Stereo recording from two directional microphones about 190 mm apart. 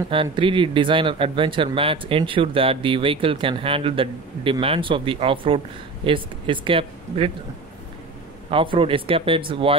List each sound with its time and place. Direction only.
0.1 s speech: 25° right (ahead or behind)
8.5 s speech: 30° right (ahead or behind)